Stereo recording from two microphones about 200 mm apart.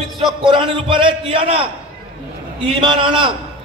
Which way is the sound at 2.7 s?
25° right (ahead or behind).